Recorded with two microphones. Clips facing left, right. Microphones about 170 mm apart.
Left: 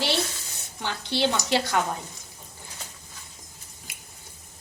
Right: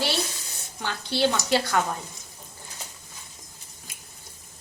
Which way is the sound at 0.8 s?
20° left (ahead or behind).